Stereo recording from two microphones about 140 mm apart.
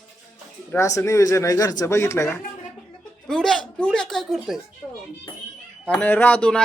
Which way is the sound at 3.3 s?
5° left (ahead or behind).